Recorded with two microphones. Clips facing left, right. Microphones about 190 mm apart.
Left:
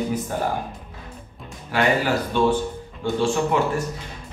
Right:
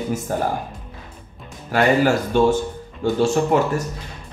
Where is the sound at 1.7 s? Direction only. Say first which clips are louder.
Right 4 dB; 45° right (ahead or behind).